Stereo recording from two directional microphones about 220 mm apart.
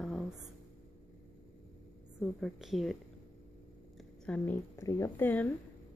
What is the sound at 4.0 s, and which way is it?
Speech, 5° left (ahead or behind).